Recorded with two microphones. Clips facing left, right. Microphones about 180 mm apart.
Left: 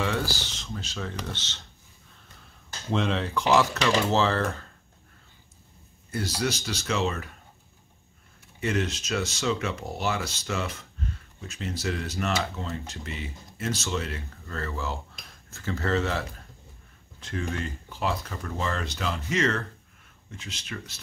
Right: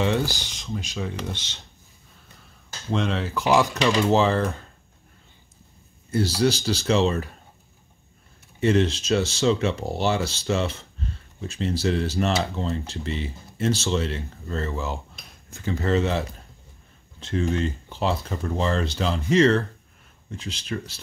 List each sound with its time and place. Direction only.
0.0 s speech: 20° right (ahead or behind)
2.9 s speech: centre (ahead or behind); by 4.6 s 15° right (ahead or behind)
6.1 s speech: 30° right (ahead or behind)
8.5 s speech: 30° right (ahead or behind)